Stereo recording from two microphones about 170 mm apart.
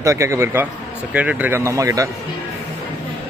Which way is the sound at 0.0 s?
15° right (ahead or behind).